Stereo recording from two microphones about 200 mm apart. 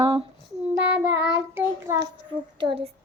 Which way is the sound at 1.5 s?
10° right (ahead or behind).